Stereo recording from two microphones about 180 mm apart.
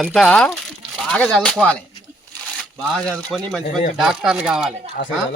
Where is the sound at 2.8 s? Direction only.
Centre (ahead or behind).